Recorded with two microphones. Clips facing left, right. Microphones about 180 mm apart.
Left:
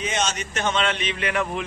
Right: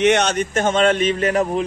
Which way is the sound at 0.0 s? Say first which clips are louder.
Right 10 dB; 65° right (ahead or behind).